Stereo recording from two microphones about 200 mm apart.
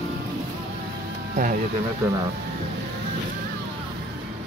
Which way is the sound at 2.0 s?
15° right (ahead or behind).